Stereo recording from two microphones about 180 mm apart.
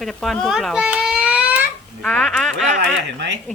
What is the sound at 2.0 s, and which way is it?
Speech, 5° left (ahead or behind).